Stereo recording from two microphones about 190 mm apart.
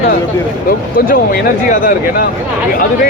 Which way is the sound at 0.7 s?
50° left (ahead or behind).